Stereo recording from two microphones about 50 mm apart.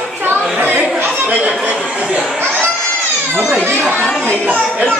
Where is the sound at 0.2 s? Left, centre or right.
Right.